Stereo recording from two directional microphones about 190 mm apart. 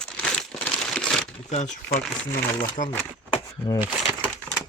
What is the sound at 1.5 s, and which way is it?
Speech, 35° left (ahead or behind).